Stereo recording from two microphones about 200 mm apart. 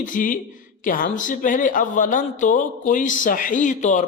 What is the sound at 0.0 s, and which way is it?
A man's voice, 40° left (ahead or behind).